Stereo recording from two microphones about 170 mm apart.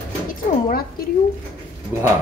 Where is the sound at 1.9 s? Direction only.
15° right (ahead or behind).